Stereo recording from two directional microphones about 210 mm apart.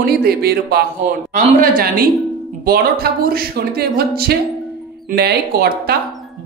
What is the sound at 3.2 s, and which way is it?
A woman's voice, 45° right (ahead or behind).